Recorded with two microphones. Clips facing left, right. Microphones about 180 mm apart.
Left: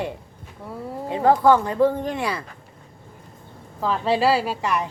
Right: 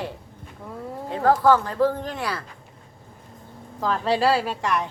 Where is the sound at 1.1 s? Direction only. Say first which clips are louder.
Left 2 dB; 10° left (ahead or behind).